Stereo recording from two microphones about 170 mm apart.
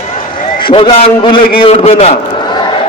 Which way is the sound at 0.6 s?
30° left (ahead or behind).